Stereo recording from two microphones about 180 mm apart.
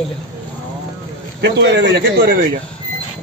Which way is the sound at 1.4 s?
75° right (ahead or behind).